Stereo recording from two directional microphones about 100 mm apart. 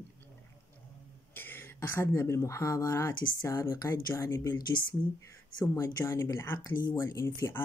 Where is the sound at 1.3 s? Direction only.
20° left (ahead or behind).